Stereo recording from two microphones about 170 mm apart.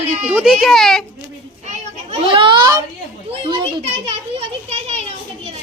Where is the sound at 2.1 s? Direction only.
30° right (ahead or behind).